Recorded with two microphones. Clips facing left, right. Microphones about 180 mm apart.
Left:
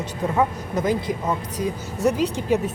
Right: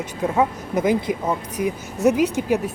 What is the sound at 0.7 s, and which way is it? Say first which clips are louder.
Speech: right 3 dB; 20° right (ahead or behind).